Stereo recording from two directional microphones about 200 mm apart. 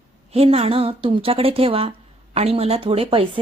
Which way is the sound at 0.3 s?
30° right (ahead or behind).